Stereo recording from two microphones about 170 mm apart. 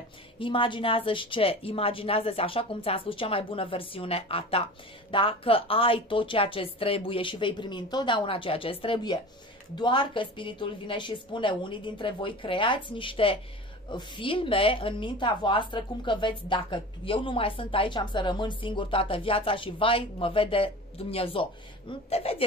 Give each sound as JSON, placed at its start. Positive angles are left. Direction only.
{"t": 0.4, "sound": "a woman's voice", "side_deg": 30}